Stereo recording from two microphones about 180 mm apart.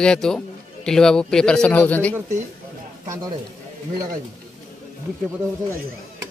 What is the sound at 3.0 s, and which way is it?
Speech, 20° right (ahead or behind).